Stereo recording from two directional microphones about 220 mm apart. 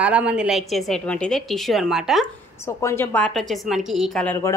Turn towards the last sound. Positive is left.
turn(degrees=5)  # may be behind; listen again after turning